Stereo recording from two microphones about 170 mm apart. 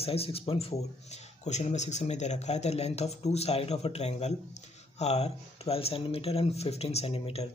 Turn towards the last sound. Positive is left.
turn(degrees=35)  # may be behind; listen again after turning